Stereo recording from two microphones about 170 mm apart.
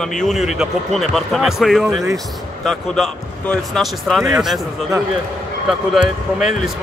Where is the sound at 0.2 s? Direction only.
Centre (ahead or behind).